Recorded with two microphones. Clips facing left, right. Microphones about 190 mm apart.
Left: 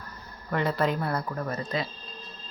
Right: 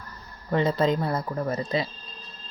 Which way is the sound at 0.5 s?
20° right (ahead or behind).